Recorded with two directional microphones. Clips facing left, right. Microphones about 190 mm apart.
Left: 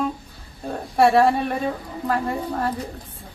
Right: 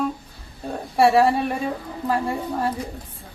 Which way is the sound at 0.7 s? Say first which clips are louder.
Even; 5° right (ahead or behind).